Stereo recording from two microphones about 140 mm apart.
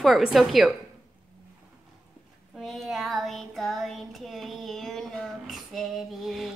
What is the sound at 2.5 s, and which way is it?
Child singing, centre (ahead or behind).